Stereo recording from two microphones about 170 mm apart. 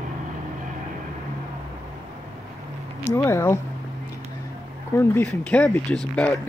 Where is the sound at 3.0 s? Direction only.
15° left (ahead or behind).